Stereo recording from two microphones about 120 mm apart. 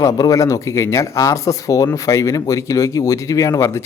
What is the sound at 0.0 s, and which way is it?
Speech, 30° left (ahead or behind).